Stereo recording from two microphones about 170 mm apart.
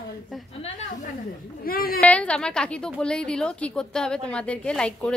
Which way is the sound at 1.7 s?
60° left (ahead or behind).